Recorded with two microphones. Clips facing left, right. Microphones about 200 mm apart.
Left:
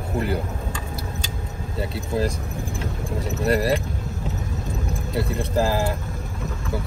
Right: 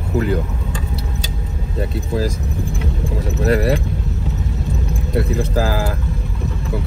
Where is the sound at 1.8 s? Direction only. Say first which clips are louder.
Right 3 dB; centre (ahead or behind).